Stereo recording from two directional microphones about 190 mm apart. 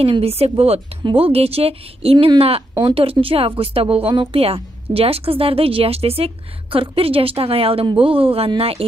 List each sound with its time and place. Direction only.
0.0 s a woman's voice: 30° right (ahead or behind)